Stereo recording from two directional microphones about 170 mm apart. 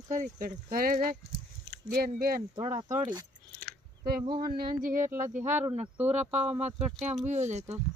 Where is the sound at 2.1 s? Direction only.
60° right (ahead or behind).